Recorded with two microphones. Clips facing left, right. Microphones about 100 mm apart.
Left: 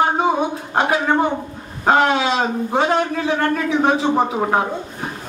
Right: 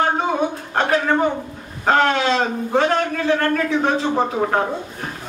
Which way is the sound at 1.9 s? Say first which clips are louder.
Left 1 dB; 15° left (ahead or behind).